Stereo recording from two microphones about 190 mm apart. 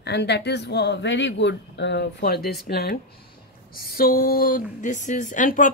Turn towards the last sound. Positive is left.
turn(degrees=45)  # may be behind; listen again after turning